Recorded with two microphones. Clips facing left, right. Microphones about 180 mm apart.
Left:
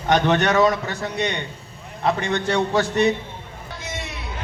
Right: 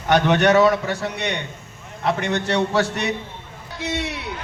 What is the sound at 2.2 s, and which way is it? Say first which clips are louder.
Speech: even; 70° right (ahead or behind).